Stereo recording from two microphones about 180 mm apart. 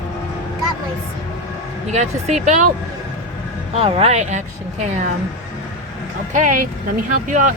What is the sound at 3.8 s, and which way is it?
Speech, 35° right (ahead or behind).